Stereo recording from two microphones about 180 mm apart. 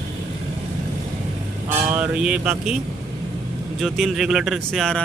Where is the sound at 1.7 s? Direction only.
10° right (ahead or behind).